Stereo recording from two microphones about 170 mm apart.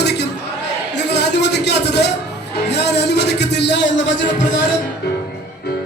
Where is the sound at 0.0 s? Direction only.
80° left.